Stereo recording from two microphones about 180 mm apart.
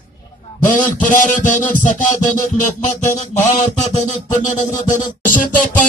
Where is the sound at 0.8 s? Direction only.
45° left (ahead or behind).